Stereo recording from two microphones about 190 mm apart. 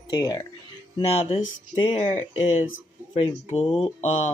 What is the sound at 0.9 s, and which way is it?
Speech, 30° left (ahead or behind).